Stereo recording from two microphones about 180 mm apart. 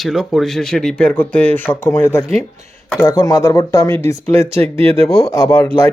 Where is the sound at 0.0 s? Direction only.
5° right (ahead or behind).